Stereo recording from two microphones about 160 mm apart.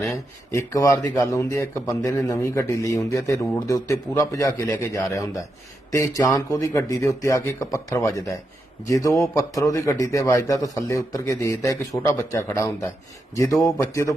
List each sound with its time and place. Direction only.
0.5 s speech: 20° left (ahead or behind)